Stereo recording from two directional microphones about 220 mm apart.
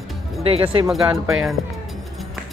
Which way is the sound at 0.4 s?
25° right (ahead or behind).